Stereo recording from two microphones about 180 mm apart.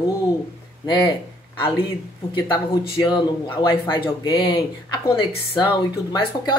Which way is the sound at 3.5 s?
25° left (ahead or behind).